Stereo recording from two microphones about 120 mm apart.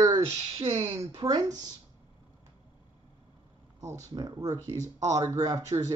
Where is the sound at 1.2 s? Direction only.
35° right (ahead or behind).